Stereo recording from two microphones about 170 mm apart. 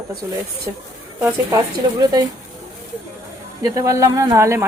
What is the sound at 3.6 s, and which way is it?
Speech, 20° right (ahead or behind).